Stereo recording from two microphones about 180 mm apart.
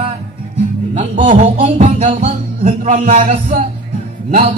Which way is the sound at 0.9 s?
40° right (ahead or behind).